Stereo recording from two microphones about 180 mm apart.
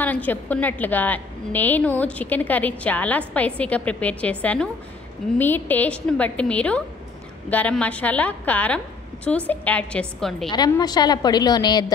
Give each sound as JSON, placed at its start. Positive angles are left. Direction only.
{"t": 0.0, "sound": "a woman's voice", "side_deg": 10}
{"t": 10.5, "sound": "a woman's voice", "side_deg": 25}